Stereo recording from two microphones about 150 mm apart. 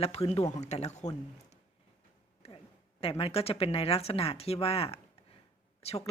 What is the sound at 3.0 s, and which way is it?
Speech, 40° left (ahead or behind).